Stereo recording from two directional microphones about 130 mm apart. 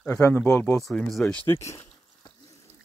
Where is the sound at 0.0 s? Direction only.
20° left (ahead or behind).